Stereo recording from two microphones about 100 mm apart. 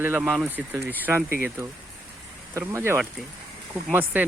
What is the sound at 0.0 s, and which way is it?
Speech, 20° right (ahead or behind).